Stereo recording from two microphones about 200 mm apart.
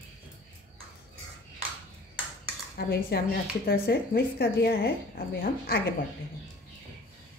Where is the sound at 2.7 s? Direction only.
50° left (ahead or behind).